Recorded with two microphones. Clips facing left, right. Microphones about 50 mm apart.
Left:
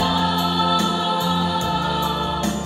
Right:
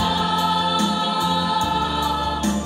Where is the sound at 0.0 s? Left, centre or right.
Left.